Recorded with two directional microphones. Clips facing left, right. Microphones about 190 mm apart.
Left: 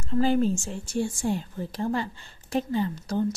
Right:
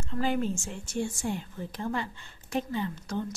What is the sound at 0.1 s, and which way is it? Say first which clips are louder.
A woman's voice: left 7 dB; 35° left (ahead or behind).